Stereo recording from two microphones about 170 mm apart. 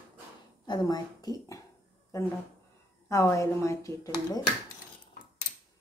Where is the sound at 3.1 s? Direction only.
15° left (ahead or behind).